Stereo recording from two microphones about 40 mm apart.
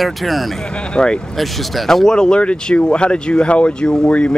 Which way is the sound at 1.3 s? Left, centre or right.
Centre.